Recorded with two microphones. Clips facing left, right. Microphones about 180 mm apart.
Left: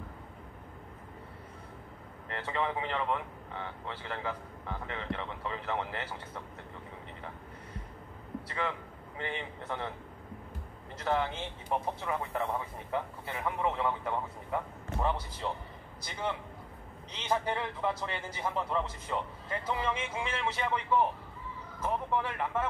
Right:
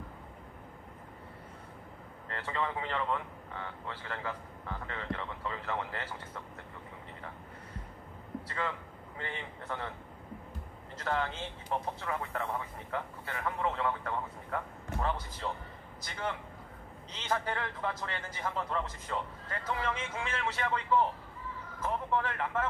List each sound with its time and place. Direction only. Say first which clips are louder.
2.2 s a man's voice: left 2 dB; 15° left (ahead or behind)
9.2 s a man's voice: left 4 dB; 15° left (ahead or behind)
11.1 s a man's voice: left 2 dB; 15° left (ahead or behind)
17.2 s a man's voice: left 2 dB; 15° left (ahead or behind)